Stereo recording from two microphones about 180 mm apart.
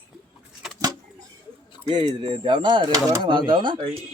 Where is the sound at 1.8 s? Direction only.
25° right (ahead or behind).